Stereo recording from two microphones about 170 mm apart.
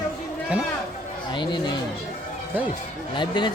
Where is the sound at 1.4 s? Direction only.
25° left (ahead or behind).